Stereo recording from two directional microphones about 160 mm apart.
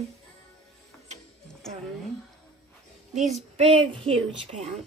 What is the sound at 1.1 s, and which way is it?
Mechanisms, 50° right (ahead or behind).